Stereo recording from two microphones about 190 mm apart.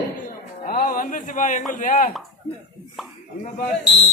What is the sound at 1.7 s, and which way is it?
Speech, 45° left (ahead or behind).